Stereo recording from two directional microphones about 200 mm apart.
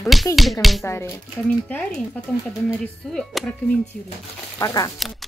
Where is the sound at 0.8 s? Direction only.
15° left (ahead or behind).